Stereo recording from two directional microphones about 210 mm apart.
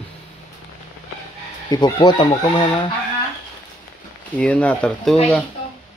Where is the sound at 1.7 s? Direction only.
20° left (ahead or behind).